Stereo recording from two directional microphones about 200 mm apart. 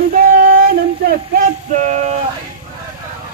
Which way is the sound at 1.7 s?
35° right (ahead or behind).